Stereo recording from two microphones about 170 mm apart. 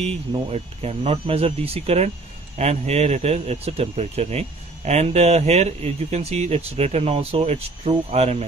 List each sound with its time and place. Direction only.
0.0 s speech: 35° right (ahead or behind)